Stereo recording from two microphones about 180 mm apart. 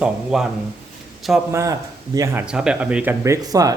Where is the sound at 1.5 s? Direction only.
15° right (ahead or behind).